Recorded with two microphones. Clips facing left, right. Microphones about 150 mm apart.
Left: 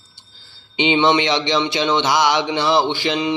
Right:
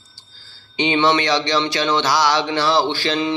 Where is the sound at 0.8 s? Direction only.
20° left (ahead or behind).